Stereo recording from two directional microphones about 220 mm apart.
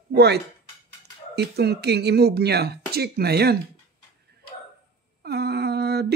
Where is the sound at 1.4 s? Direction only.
45° right (ahead or behind).